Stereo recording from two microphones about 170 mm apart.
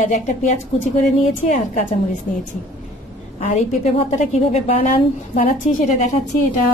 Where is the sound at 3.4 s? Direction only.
45° left (ahead or behind).